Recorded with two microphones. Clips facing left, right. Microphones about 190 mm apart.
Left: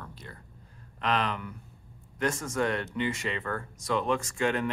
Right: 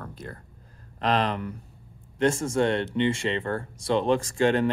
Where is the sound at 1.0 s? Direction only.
35° right (ahead or behind).